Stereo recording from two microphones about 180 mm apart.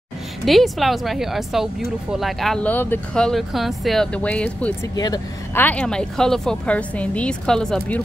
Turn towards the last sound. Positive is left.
turn(degrees=5)  # may be behind; listen again after turning